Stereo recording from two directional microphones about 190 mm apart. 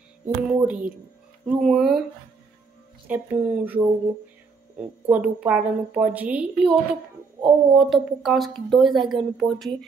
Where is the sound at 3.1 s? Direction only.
10° right (ahead or behind).